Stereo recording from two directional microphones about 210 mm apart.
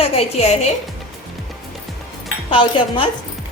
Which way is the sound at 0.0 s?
30° left (ahead or behind).